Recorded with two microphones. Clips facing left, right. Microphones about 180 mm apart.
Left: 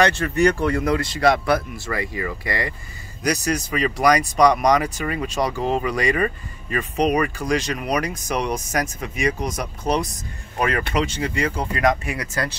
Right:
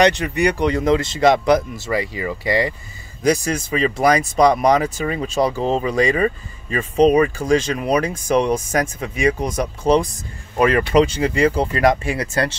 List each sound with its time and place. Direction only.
0.0 s speech: 15° right (ahead or behind)
9.4 s speech: 50° right (ahead or behind)
9.8 s speech: 30° right (ahead or behind)